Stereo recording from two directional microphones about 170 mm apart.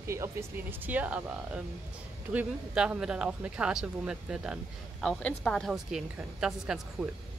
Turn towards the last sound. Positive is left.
turn(degrees=-5)  # may be behind; listen again after turning